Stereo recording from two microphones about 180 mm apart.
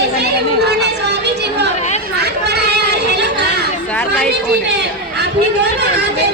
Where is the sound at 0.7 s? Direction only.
70° right (ahead or behind).